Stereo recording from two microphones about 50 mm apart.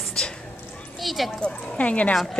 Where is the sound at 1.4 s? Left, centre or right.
Left.